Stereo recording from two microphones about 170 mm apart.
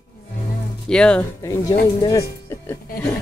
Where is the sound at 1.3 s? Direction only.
20° left (ahead or behind).